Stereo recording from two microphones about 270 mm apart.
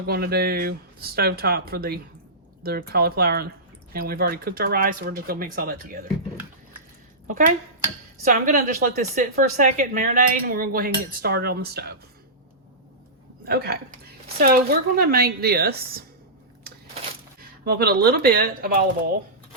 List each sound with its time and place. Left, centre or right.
0.0 s a woman's voice: right
8.2 s a woman's voice: right
13.4 s a woman's voice: right
17.7 s a woman's voice: right